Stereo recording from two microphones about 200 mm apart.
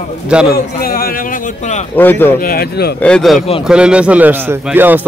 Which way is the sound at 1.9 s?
10° left (ahead or behind).